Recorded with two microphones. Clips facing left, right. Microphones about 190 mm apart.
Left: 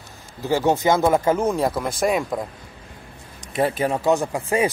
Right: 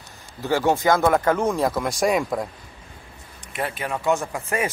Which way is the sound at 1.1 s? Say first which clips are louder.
Left 1 dB; 10° left (ahead or behind).